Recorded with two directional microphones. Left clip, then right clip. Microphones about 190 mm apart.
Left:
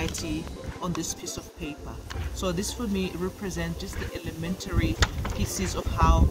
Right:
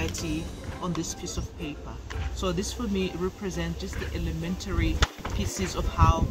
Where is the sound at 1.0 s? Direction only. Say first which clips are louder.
Left 1 dB; 35° left (ahead or behind).